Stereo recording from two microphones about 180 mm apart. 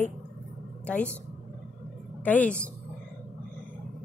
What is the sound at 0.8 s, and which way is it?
Speech, 10° left (ahead or behind).